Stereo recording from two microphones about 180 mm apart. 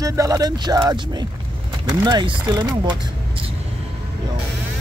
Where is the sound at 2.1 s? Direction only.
25° right (ahead or behind).